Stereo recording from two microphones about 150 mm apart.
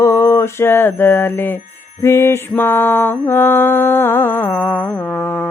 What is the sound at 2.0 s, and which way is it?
Mantra, 20° left (ahead or behind).